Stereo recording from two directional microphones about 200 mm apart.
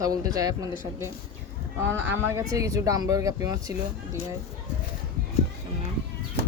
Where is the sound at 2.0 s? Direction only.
10° right (ahead or behind).